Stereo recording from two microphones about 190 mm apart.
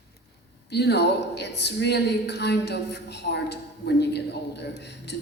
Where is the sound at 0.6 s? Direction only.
60° left (ahead or behind).